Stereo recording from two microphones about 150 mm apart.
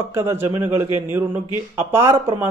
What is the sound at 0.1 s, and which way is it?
Speech, 15° right (ahead or behind).